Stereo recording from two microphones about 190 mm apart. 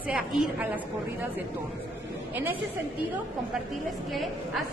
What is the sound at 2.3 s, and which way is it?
Speech, 10° right (ahead or behind).